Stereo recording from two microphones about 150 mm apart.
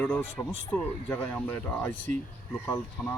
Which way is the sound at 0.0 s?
10° left (ahead or behind).